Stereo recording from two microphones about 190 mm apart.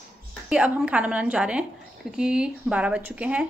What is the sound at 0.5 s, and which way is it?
A woman's voice, 5° right (ahead or behind).